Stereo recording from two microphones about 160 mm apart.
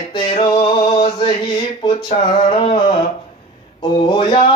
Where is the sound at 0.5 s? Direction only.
35° left (ahead or behind).